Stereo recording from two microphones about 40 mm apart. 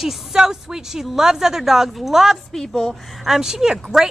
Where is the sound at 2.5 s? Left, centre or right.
Centre.